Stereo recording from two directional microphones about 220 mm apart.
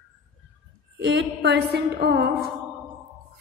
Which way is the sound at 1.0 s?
50° right (ahead or behind).